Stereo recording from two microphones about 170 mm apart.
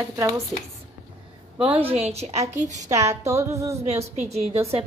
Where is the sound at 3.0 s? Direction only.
20° right (ahead or behind).